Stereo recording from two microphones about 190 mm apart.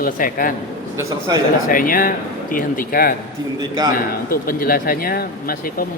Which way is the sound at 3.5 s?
25° right (ahead or behind).